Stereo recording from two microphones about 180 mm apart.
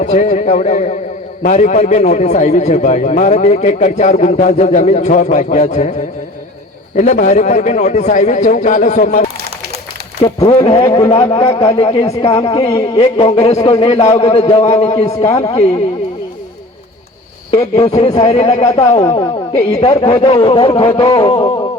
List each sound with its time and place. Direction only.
0.0 s a man's voice: 40° left (ahead or behind)
6.9 s a man's voice: 40° left (ahead or behind)
10.2 s a man's voice: 30° left (ahead or behind)
10.8 s speech: 20° left (ahead or behind)
11.6 s a man's voice: 30° left (ahead or behind)
15.1 s speech: 15° left (ahead or behind)
17.5 s a man's voice: 35° left (ahead or behind)
19.0 s speech: 20° left (ahead or behind)
19.5 s a man's voice: 35° left (ahead or behind)